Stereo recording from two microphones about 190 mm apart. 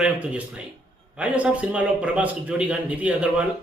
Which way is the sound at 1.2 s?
5° right (ahead or behind).